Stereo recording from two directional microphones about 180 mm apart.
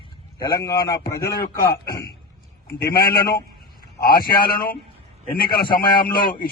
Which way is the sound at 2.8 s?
55° left (ahead or behind).